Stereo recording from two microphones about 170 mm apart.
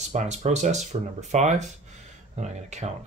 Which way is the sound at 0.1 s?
40° right (ahead or behind).